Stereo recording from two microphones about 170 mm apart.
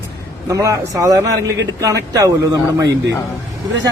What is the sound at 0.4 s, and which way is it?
A man's voice, 20° right (ahead or behind).